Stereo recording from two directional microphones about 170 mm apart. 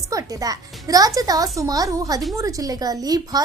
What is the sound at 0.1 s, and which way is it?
A child's voice, 20° right (ahead or behind).